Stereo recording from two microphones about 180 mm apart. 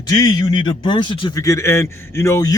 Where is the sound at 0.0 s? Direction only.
20° left (ahead or behind).